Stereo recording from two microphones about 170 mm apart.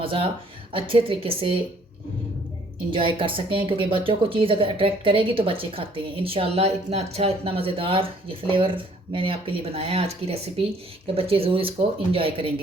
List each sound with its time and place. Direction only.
0.0 s speech: 30° right (ahead or behind)
2.9 s speech: 30° right (ahead or behind)